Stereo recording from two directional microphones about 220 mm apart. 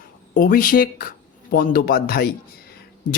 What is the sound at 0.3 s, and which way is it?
Speech, 40° left (ahead or behind).